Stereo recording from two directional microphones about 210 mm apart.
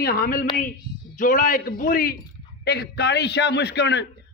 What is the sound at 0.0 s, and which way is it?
A man's voice, 45° left (ahead or behind).